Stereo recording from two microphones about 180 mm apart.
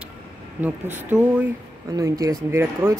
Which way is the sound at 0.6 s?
10° right (ahead or behind).